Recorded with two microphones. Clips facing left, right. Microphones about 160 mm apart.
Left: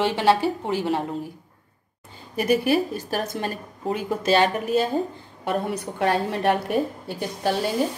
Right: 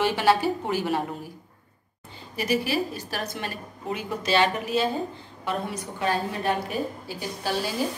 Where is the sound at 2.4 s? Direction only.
50° left (ahead or behind).